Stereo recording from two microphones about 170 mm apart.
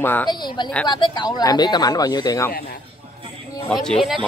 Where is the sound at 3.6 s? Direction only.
5° left (ahead or behind).